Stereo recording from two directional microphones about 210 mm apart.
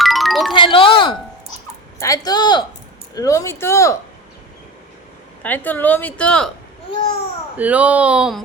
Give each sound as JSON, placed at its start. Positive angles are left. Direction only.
{"t": 0.0, "sound": "music", "side_deg": 0}
{"t": 0.5, "sound": "a woman's voice", "side_deg": 25}
{"t": 5.4, "sound": "a woman's voice", "side_deg": 10}
{"t": 7.5, "sound": "speech", "side_deg": -5}